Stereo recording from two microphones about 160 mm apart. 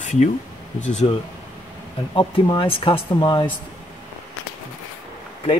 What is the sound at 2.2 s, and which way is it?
Speech, 35° left (ahead or behind).